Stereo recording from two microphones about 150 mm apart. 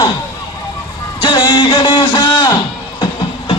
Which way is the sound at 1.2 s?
35° left (ahead or behind).